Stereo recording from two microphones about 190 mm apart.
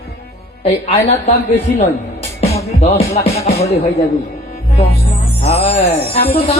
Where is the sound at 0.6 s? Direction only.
30° left (ahead or behind).